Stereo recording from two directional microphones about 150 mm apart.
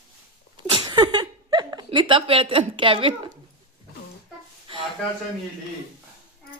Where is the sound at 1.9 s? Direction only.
35° right (ahead or behind).